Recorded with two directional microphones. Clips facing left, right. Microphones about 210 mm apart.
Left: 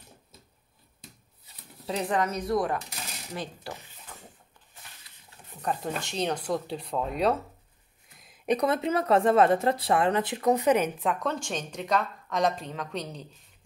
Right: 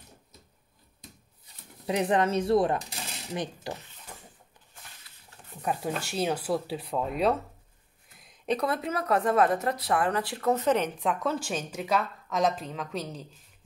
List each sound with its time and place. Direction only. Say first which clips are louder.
1.9 s cutlery: right 3 dB; 20° right (ahead or behind)
5.6 s speech: even; 10° right (ahead or behind)
8.5 s speech: left 3 dB; 20° left (ahead or behind); by 13.3 s centre (ahead or behind)